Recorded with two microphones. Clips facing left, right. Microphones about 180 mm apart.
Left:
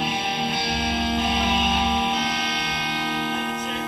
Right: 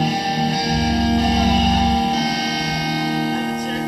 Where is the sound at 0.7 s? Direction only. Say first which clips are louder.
Right 8 dB; 40° right (ahead or behind).